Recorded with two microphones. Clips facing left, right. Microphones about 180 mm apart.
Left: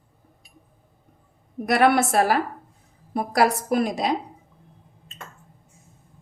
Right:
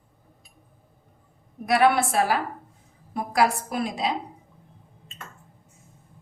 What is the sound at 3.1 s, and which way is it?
A woman's voice, 40° left (ahead or behind).